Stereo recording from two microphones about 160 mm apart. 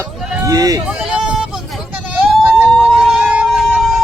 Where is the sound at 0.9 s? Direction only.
5° right (ahead or behind).